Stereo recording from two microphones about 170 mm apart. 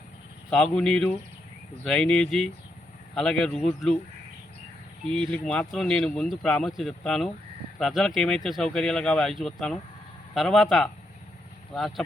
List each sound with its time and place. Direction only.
0.5 s speech: 5° left (ahead or behind)
5.2 s speech: 5° left (ahead or behind)